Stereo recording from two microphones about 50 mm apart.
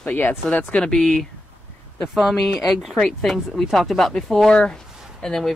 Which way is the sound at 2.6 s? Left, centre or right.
Centre.